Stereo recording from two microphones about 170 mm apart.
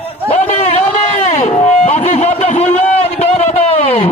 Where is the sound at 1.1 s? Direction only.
40° left (ahead or behind).